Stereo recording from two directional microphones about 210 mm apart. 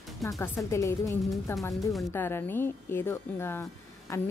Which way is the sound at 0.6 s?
15° left (ahead or behind).